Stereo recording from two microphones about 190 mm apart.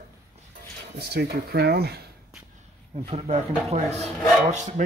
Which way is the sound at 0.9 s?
55° right (ahead or behind).